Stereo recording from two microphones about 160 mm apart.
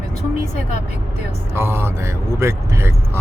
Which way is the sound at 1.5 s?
15° right (ahead or behind).